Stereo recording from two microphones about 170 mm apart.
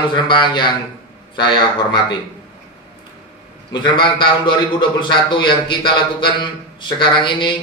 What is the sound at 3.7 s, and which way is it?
A man's voice, 25° left (ahead or behind).